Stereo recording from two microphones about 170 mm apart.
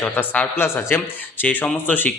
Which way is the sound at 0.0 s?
10° left (ahead or behind).